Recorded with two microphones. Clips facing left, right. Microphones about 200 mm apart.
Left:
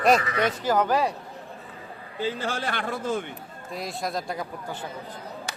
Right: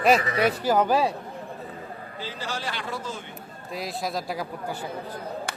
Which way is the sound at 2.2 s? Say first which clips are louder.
Left 6 dB; 55° left (ahead or behind).